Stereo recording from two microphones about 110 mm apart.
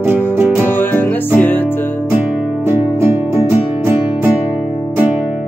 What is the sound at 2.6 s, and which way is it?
Music, 20° right (ahead or behind).